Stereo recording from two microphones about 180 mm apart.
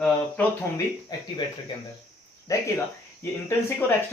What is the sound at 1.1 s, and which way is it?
Speech, 25° left (ahead or behind).